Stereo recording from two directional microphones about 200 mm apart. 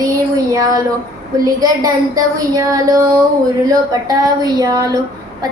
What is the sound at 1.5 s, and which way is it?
A woman's voice, 20° right (ahead or behind).